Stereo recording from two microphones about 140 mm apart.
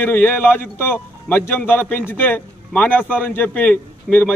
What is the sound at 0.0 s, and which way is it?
A man's voice, 15° left (ahead or behind).